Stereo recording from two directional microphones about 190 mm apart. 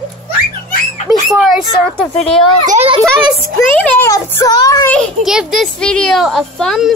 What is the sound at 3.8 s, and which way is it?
Speech, 10° left (ahead or behind).